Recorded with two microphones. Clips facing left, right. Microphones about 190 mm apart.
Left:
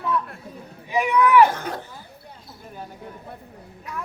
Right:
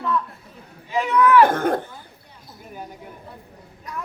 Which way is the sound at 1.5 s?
50° right (ahead or behind).